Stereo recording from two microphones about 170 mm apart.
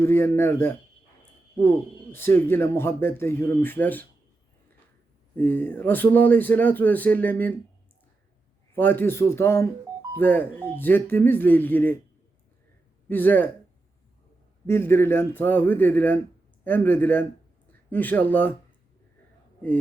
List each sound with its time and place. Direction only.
0.0 s speech: 15° left (ahead or behind)
1.2 s a sound: 10° left (ahead or behind)
2.1 s speech: 10° left (ahead or behind)
5.4 s speech: 10° left (ahead or behind)
8.7 s speech: 10° left (ahead or behind)
13.1 s speech: 10° left (ahead or behind)
14.7 s speech: 15° left (ahead or behind)